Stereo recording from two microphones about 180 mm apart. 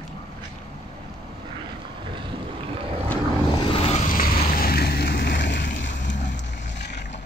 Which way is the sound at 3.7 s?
35° left (ahead or behind).